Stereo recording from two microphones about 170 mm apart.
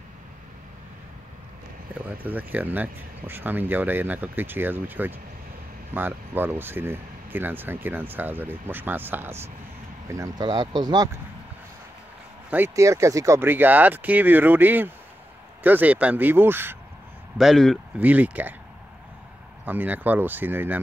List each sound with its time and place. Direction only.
2.0 s speech: 10° right (ahead or behind); by 11.1 s 25° right (ahead or behind)
12.4 s speech: 10° right (ahead or behind)
17.4 s speech: centre (ahead or behind)
19.6 s speech: 10° right (ahead or behind)